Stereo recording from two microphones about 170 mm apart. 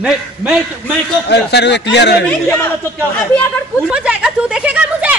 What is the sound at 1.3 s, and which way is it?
Speech, 85° left.